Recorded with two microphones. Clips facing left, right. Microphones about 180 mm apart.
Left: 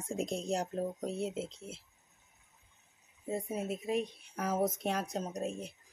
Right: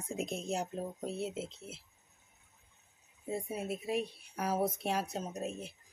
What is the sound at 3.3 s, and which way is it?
Speech, 10° right (ahead or behind).